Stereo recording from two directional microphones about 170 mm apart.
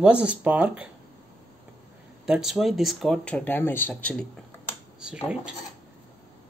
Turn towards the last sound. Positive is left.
turn(degrees=-5)  # may be behind; listen again after turning